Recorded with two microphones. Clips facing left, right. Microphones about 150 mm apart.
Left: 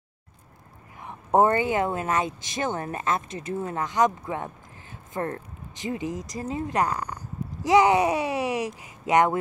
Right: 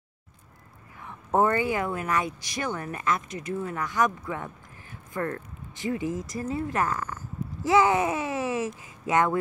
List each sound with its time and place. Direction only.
1.0 s speech: 20° left (ahead or behind)